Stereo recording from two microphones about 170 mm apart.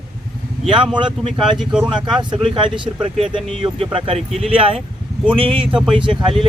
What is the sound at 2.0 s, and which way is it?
Speech, 30° right (ahead or behind).